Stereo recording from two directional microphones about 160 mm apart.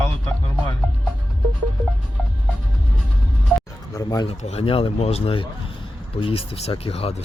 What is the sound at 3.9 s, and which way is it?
Speech, 25° left (ahead or behind).